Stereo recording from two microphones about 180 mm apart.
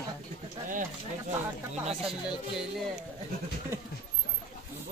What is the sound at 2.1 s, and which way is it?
Music, 5° right (ahead or behind).